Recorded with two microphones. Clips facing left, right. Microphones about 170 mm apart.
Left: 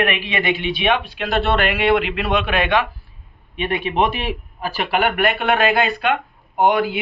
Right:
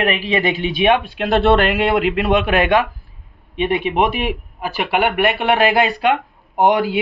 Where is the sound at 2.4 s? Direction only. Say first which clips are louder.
Right 4 dB; 40° right (ahead or behind).